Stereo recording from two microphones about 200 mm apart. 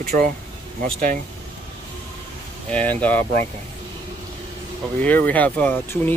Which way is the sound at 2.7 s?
10° left (ahead or behind).